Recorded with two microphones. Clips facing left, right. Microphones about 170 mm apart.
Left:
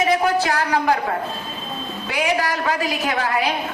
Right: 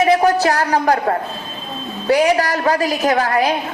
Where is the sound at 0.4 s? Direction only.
40° right (ahead or behind).